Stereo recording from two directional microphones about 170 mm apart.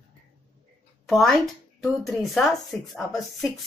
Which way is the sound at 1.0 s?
Centre (ahead or behind).